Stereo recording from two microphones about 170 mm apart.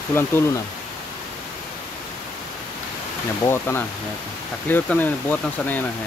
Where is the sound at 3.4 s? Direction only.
15° left (ahead or behind).